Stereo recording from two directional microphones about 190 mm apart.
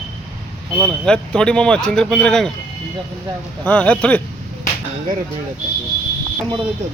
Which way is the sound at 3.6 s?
5° left (ahead or behind).